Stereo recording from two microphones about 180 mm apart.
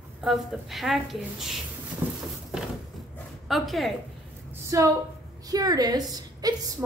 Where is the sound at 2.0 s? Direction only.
10° right (ahead or behind).